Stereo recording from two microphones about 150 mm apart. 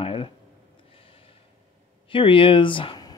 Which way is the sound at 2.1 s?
35° left (ahead or behind).